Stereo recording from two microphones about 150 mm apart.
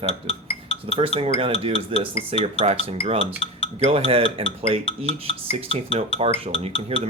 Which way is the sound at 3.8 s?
40° right (ahead or behind).